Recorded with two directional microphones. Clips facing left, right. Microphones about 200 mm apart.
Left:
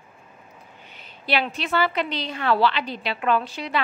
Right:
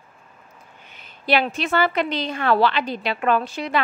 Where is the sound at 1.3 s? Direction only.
45° right (ahead or behind).